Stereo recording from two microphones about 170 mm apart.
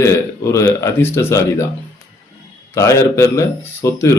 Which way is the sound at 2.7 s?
15° left (ahead or behind).